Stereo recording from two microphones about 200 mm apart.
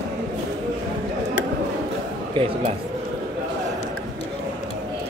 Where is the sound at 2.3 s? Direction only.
25° right (ahead or behind).